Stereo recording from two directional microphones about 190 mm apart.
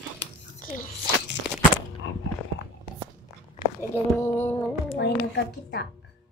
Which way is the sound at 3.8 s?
10° left (ahead or behind).